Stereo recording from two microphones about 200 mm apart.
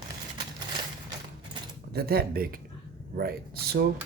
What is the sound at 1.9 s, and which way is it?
Speech, 50° right (ahead or behind).